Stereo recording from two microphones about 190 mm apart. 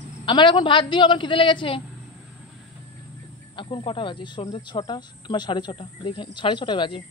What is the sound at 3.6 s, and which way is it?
Speech, 25° left (ahead or behind).